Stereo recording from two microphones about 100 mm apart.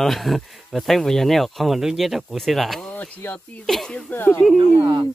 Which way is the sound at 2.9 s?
15° left (ahead or behind).